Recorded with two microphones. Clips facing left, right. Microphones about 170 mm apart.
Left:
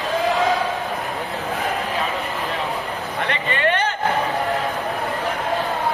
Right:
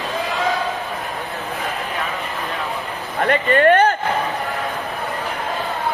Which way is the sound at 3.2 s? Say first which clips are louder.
Right 8 dB; 45° right (ahead or behind).